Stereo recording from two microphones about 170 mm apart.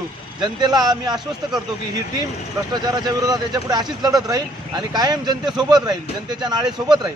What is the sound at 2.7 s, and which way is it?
Speech, 25° right (ahead or behind).